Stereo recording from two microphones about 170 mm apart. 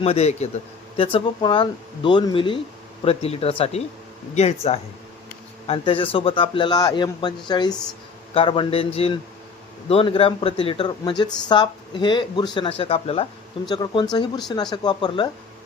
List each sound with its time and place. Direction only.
0.0 s a man's voice: 40° left (ahead or behind)
5.6 s a man's voice: 30° left (ahead or behind)